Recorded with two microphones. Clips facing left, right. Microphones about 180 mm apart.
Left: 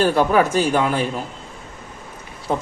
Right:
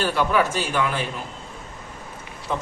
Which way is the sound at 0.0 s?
45° left (ahead or behind).